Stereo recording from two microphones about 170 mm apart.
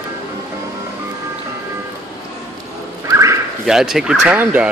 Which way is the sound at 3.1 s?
15° right (ahead or behind).